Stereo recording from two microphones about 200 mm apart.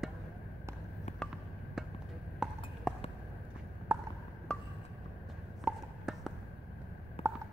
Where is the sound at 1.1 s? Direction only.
35° left (ahead or behind).